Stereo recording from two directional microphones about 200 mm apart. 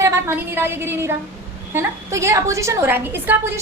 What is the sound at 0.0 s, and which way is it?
A woman's voice, 10° right (ahead or behind).